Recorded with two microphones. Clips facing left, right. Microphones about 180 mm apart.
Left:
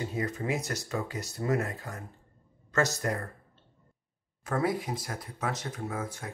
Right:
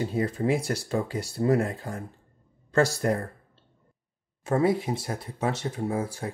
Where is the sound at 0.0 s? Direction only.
30° right (ahead or behind).